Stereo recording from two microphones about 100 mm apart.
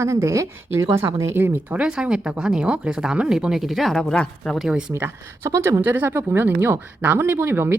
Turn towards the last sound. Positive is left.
turn(degrees=-20)  # may be behind; listen again after turning